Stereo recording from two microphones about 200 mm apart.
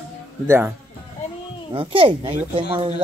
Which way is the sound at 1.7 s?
25° right (ahead or behind).